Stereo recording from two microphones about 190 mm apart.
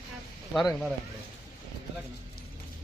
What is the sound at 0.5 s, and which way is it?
Speech, centre (ahead or behind).